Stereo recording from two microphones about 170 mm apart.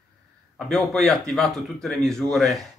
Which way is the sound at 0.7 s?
Centre (ahead or behind).